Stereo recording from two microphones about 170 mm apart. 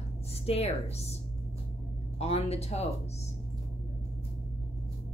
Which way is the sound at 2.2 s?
40° left (ahead or behind).